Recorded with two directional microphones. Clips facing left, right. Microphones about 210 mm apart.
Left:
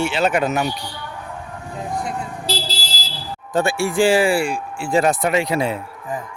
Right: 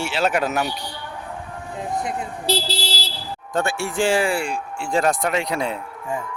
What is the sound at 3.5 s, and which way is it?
Speech, 10° left (ahead or behind).